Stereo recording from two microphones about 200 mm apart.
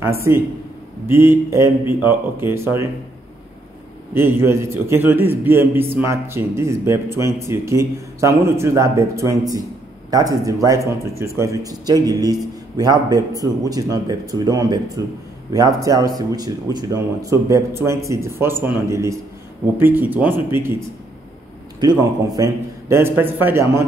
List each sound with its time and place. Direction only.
0.3 s a man's voice: 15° right (ahead or behind)
4.1 s a man's voice: 10° right (ahead or behind)
21.7 s a man's voice: 20° right (ahead or behind)